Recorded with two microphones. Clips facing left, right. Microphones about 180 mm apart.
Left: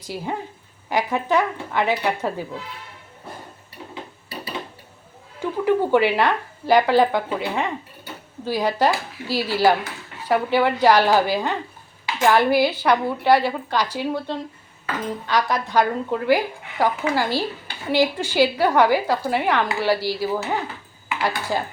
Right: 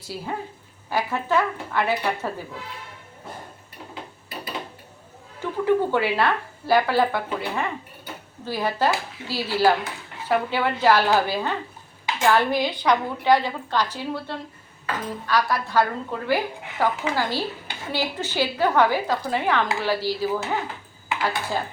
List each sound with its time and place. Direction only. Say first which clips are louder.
0.0 s speech: left 3 dB; 15° left (ahead or behind)
5.6 s speech: left 3 dB; 15° left (ahead or behind)